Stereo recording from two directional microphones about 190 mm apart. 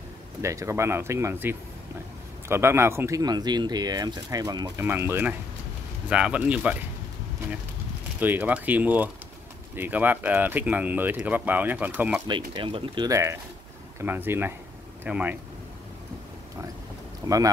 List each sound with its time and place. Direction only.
0.4 s speech: 15° right (ahead or behind)
8.2 s speech: 10° right (ahead or behind)
12.3 s speech: 25° right (ahead or behind); by 15.3 s 5° right (ahead or behind)
17.2 s speech: 20° right (ahead or behind)